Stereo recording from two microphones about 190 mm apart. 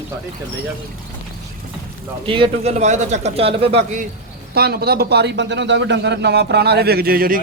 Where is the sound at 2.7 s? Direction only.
40° right (ahead or behind).